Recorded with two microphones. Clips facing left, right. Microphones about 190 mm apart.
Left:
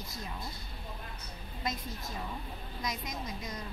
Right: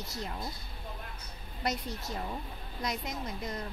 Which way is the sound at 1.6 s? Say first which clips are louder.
Right 4 dB; 80° right.